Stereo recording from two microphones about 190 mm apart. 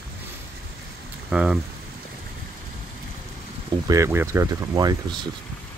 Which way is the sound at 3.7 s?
15° right (ahead or behind).